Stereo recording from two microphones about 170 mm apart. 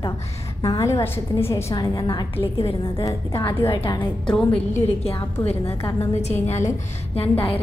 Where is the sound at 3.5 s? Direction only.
15° left (ahead or behind).